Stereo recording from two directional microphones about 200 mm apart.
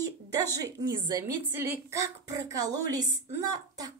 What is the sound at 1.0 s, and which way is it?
Speech, 15° right (ahead or behind).